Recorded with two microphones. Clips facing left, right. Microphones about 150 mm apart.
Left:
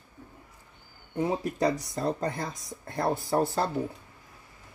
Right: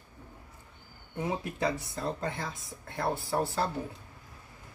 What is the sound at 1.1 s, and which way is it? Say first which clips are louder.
Speech: left 5 dB; 35° left (ahead or behind).